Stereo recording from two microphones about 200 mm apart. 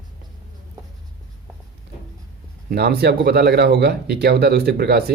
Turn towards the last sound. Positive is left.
turn(degrees=-50)  # may be behind; listen again after turning